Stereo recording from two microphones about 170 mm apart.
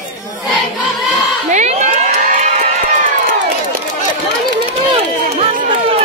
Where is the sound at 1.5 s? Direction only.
45° right (ahead or behind).